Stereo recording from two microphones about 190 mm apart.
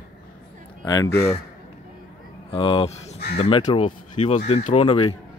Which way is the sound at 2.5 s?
30° left (ahead or behind).